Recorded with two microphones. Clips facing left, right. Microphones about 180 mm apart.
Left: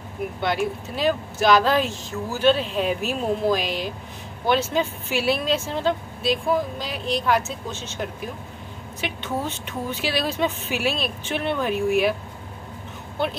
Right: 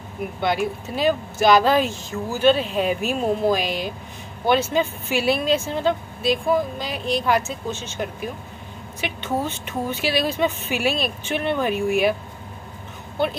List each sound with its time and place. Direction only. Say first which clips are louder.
0.4 s speech: right 2 dB; centre (ahead or behind)